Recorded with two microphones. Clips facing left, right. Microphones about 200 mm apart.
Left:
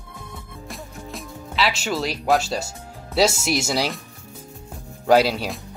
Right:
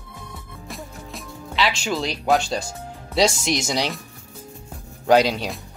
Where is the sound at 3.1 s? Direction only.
5° left (ahead or behind).